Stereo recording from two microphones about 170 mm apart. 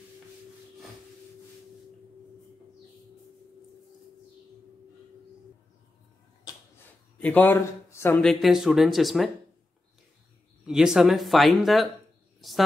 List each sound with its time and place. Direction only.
6.5 s a sound: 25° left (ahead or behind)
7.2 s speech: 10° left (ahead or behind)
10.7 s speech: 5° right (ahead or behind)